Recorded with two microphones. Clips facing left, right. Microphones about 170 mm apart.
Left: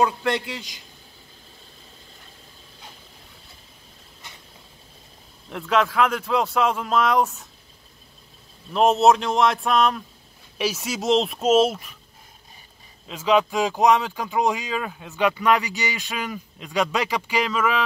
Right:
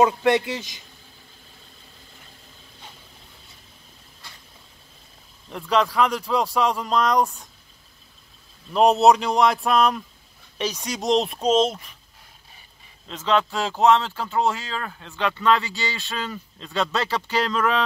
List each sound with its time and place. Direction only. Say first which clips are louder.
0.0 s a man's voice: right 4 dB; 20° right (ahead or behind)
5.5 s speech: even; centre (ahead or behind)
8.7 s speech: right 1 dB; centre (ahead or behind)
13.1 s speech: left 2 dB; 10° left (ahead or behind)